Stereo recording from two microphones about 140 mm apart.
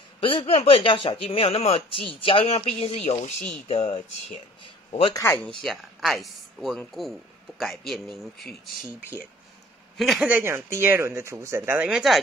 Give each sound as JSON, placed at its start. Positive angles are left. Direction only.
{"t": 0.2, "sound": "speech", "side_deg": 40}
{"t": 5.1, "sound": "speech", "side_deg": 15}
{"t": 5.6, "sound": "speech", "side_deg": 0}
{"t": 9.9, "sound": "speech", "side_deg": 0}
{"t": 10.2, "sound": "speech", "side_deg": -15}
{"t": 11.9, "sound": "speech", "side_deg": 0}